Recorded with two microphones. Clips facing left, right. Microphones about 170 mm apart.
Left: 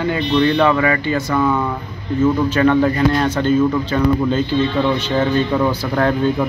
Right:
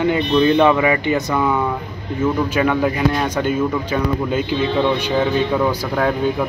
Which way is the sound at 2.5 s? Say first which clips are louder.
Left 3 dB; 10° right (ahead or behind).